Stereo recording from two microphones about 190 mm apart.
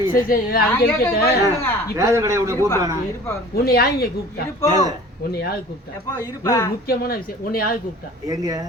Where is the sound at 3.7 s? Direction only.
55° left (ahead or behind).